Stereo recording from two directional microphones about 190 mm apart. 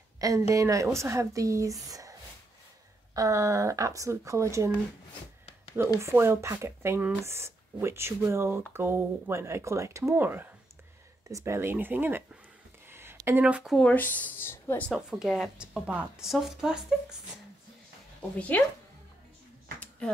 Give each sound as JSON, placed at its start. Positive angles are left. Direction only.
{"t": 0.2, "sound": "speech", "side_deg": -20}
{"t": 3.2, "sound": "speech", "side_deg": -15}
{"t": 5.9, "sound": "speech", "side_deg": -15}
{"t": 14.9, "sound": "speech", "side_deg": -5}
{"t": 18.5, "sound": "speech", "side_deg": 10}